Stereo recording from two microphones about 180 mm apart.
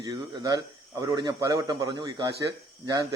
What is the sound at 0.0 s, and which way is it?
Speech, 20° right (ahead or behind).